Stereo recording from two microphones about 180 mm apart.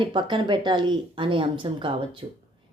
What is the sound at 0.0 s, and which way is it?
Speech, 25° right (ahead or behind).